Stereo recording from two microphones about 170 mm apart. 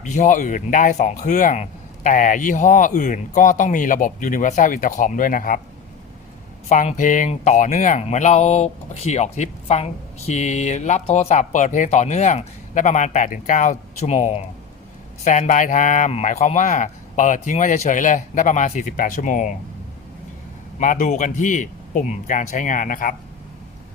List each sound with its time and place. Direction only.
0.0 s speech: 50° left (ahead or behind)
6.7 s speech: 45° left (ahead or behind)
20.7 s speech: 50° left (ahead or behind)